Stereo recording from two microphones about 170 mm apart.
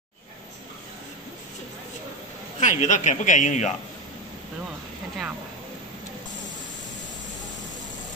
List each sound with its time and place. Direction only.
2.6 s a man's voice: 45° left (ahead or behind)